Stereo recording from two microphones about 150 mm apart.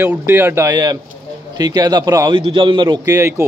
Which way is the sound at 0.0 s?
15° right (ahead or behind).